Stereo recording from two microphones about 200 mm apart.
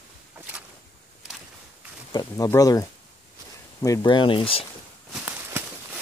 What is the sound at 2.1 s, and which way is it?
Speech, 20° left (ahead or behind).